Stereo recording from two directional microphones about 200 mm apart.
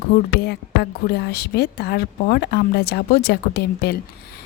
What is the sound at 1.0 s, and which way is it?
Speech, 50° left (ahead or behind).